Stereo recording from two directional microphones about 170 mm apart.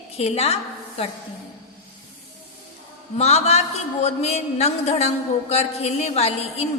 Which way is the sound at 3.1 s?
40° left (ahead or behind).